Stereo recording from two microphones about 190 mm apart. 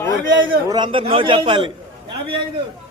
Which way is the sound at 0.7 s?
25° right (ahead or behind).